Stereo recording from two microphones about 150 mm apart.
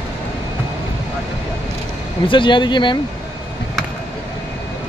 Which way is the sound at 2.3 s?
35° left (ahead or behind).